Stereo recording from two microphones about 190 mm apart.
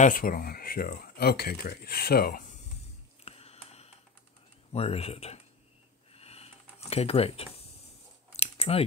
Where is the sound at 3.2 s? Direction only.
30° left (ahead or behind).